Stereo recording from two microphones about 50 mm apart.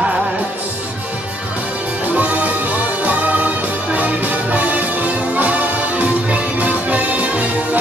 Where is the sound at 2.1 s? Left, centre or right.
Right.